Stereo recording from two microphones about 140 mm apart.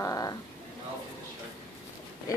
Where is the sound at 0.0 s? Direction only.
25° left (ahead or behind).